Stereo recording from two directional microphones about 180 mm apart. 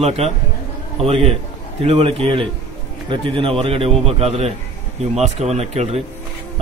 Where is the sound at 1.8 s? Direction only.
30° right (ahead or behind).